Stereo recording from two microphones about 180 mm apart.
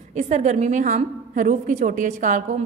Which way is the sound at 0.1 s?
40° right (ahead or behind).